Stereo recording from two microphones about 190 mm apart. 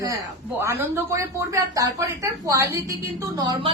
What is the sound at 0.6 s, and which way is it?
A woman's voice, 15° right (ahead or behind).